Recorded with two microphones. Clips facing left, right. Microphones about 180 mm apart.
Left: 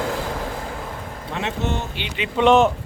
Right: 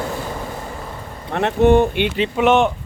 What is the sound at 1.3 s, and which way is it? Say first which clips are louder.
Speech: right 12 dB; 55° right (ahead or behind).